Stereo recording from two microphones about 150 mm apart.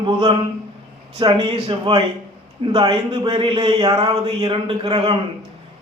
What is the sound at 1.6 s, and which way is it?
A man's voice, 40° right (ahead or behind).